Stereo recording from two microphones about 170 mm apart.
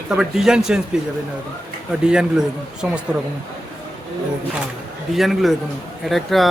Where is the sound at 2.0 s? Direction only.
5° right (ahead or behind).